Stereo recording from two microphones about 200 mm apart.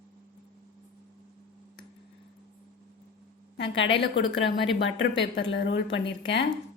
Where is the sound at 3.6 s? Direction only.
70° left (ahead or behind).